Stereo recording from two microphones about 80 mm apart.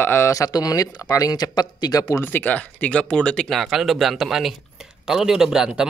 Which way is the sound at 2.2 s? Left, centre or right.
Left.